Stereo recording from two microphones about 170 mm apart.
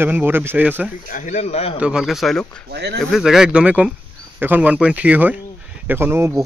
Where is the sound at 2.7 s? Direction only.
80° right.